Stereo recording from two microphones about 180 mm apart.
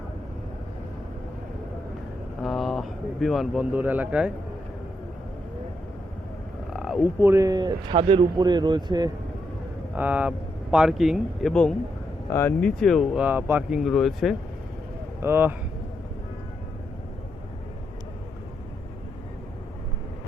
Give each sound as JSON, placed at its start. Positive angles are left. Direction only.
{"t": 2.4, "sound": "speech", "side_deg": 0}
{"t": 6.7, "sound": "frog", "side_deg": 0}
{"t": 7.2, "sound": "speech", "side_deg": -15}
{"t": 9.9, "sound": "speech", "side_deg": -10}
{"t": 15.2, "sound": "speech", "side_deg": -10}